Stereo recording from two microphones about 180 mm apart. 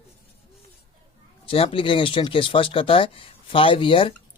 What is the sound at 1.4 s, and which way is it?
Speech, 30° left (ahead or behind).